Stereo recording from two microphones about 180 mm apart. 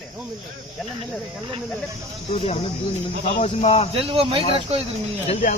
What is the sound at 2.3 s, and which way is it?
Speech, 35° left (ahead or behind).